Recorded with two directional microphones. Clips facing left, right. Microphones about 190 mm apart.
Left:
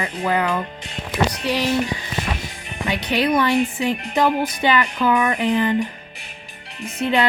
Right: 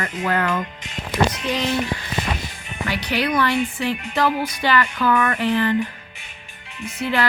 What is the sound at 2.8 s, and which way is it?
Speech, 20° left (ahead or behind).